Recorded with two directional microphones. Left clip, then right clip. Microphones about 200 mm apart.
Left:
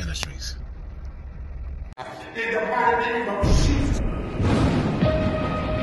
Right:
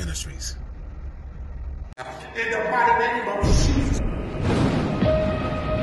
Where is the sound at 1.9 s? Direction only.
Centre (ahead or behind).